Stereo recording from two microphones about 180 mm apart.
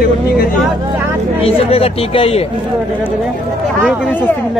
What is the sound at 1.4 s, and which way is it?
Speech, 35° left (ahead or behind).